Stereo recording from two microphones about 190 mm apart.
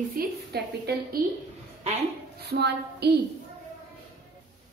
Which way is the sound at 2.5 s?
60° right (ahead or behind).